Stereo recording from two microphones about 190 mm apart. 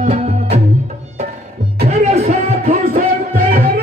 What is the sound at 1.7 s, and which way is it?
Music, 35° right (ahead or behind).